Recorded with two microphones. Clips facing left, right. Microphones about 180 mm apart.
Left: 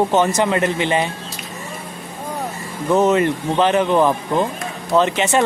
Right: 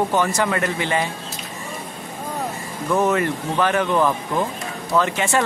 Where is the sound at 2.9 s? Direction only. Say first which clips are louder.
Left 4 dB; 20° left (ahead or behind).